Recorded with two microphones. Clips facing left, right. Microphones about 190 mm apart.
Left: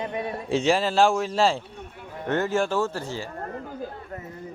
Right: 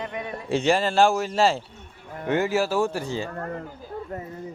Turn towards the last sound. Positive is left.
turn(degrees=-15)  # may be behind; listen again after turning